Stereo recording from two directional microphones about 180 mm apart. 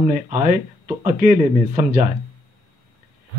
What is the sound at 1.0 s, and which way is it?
A man's voice, 45° right (ahead or behind).